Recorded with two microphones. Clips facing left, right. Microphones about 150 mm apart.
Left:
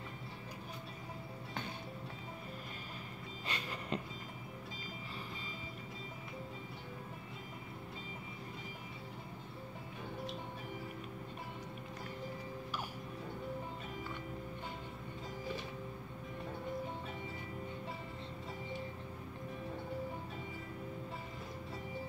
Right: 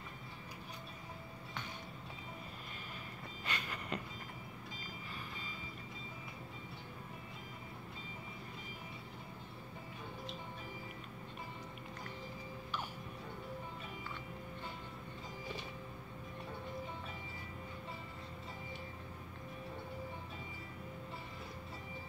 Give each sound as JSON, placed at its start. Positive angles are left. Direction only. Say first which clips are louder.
{"t": 3.4, "sound": "vehicle", "louder": "left 1 dB", "side_deg": 30}